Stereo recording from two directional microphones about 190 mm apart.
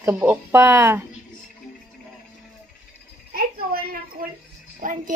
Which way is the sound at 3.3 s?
50° right (ahead or behind).